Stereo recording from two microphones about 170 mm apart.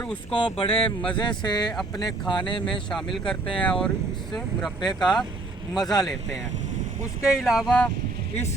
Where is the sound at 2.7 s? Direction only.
5° left (ahead or behind).